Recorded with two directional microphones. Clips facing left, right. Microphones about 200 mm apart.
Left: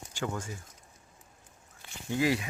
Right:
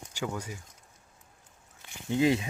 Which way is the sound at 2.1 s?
20° right (ahead or behind).